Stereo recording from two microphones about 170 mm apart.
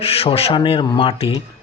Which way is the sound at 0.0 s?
35° left (ahead or behind).